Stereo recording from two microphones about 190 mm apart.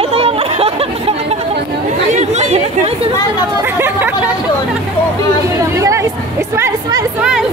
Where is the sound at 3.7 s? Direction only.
10° right (ahead or behind).